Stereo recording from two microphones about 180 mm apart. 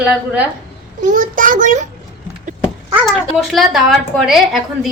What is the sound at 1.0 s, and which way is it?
Speech, 45° right (ahead or behind).